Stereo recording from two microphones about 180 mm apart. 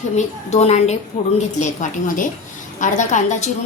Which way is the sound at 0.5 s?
35° left (ahead or behind).